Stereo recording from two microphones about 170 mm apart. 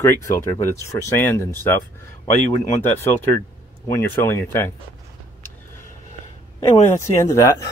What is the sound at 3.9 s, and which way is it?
Speech, 15° left (ahead or behind).